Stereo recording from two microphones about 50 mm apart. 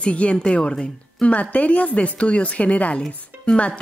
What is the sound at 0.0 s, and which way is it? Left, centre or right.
A woman's voice, left.